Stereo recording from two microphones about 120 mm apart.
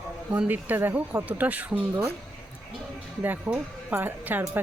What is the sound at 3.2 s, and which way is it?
Speech, 15° right (ahead or behind).